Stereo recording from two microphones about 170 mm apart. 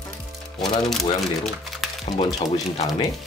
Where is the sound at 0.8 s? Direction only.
Centre (ahead or behind).